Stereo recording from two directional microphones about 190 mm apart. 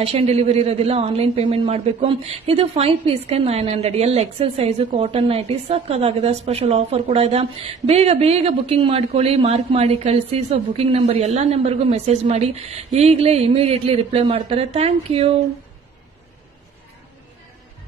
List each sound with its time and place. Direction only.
0.0 s speech: 35° right (ahead or behind)